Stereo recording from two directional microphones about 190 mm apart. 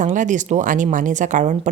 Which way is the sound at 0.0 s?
40° right (ahead or behind).